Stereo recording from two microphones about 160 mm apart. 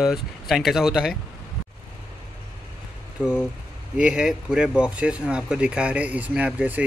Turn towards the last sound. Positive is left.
turn(degrees=-10)  # may be behind; listen again after turning